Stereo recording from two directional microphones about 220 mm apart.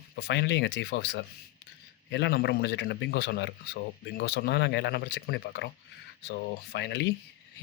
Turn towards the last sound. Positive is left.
turn(degrees=50)  # may be behind; listen again after turning